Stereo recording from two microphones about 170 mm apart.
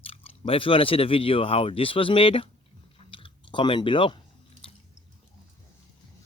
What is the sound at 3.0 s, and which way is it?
Chewing, 30° left (ahead or behind).